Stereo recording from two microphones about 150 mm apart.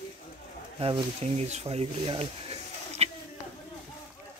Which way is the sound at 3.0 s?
45° right (ahead or behind).